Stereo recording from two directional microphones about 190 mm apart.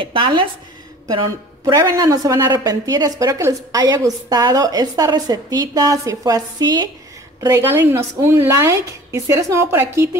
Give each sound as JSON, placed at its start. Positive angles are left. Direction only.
{"t": 0.0, "sound": "a woman's voice", "side_deg": -25}
{"t": 1.6, "sound": "a woman's voice", "side_deg": -15}